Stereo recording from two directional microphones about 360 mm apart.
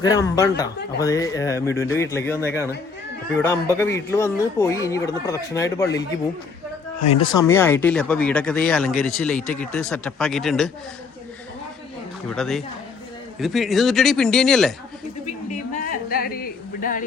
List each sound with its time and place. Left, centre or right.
0.0 s speech: centre
7.1 s speech: centre
12.3 s speech: centre
15.4 s a woman's voice: left